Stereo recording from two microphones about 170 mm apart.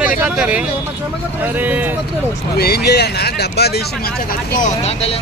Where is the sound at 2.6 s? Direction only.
70° left (ahead or behind).